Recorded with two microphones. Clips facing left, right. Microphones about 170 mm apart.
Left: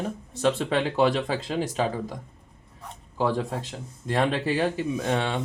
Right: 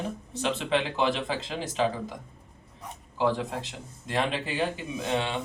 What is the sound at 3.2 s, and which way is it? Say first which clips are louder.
Speech: left 1 dB; 45° left (ahead or behind).